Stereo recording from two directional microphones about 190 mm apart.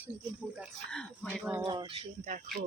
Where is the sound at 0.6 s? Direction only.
5° left (ahead or behind).